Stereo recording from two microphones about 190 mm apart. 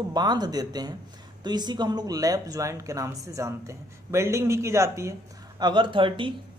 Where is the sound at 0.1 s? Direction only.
20° right (ahead or behind).